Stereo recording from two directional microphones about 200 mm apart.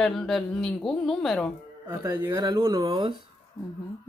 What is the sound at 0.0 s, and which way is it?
Speech, centre (ahead or behind).